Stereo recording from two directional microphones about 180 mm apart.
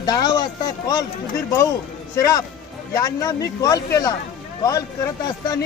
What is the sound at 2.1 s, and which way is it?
Speech, 20° left (ahead or behind).